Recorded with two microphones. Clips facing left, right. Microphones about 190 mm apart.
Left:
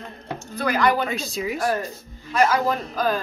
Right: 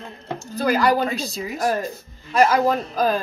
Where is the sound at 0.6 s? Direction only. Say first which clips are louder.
Right 2 dB; 35° right (ahead or behind).